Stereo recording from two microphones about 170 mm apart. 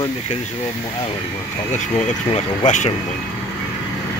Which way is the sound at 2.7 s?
45° left (ahead or behind).